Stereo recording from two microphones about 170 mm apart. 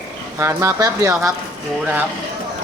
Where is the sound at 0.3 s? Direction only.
15° right (ahead or behind).